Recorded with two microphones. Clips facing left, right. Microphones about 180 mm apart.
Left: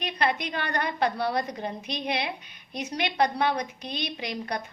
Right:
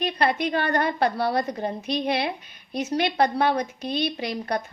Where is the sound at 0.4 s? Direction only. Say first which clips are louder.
Right 6 dB; 40° right (ahead or behind).